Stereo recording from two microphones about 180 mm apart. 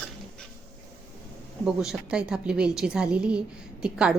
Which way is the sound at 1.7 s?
5° right (ahead or behind).